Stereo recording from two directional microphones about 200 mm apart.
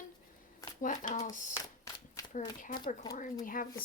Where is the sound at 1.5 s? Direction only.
15° left (ahead or behind).